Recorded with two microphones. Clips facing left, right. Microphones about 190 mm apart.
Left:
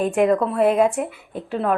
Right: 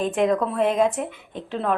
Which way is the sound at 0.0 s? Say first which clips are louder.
Left 3 dB; 5° left (ahead or behind).